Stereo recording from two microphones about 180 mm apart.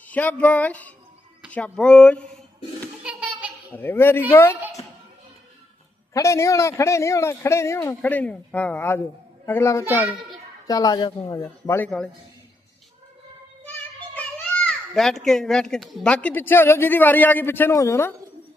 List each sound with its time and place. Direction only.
0.1 s speech: 10° left (ahead or behind)
3.0 s a sound: 5° right (ahead or behind)
3.8 s a man's voice: 10° left (ahead or behind)
6.1 s a man's voice: 15° left (ahead or behind)
11.9 s speech: 5° left (ahead or behind)
13.7 s a child's voice: 10° left (ahead or behind)